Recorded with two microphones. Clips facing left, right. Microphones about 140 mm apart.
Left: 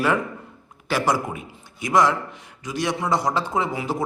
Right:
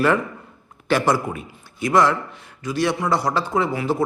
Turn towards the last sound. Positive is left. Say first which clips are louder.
# right 4 dB
turn(degrees=15)  # may be behind; listen again after turning